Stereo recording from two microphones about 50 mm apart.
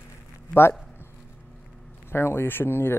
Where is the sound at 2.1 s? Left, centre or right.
Left.